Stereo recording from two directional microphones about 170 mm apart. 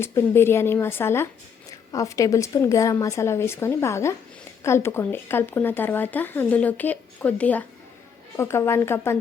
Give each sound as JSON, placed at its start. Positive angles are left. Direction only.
{"t": 0.0, "sound": "speech", "side_deg": 15}